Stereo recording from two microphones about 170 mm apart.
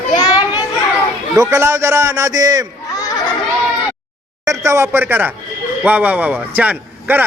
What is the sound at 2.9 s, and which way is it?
Children playing, 20° left (ahead or behind).